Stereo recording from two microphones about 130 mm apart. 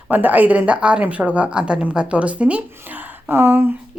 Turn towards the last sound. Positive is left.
turn(degrees=-15)  # may be behind; listen again after turning